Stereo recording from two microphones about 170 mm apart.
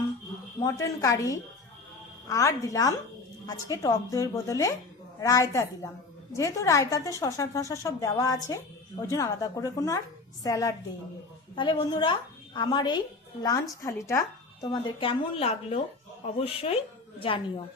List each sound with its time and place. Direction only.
0.6 s speech: 20° left (ahead or behind)